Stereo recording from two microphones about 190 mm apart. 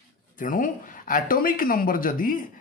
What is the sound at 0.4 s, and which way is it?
Speech, 45° left (ahead or behind).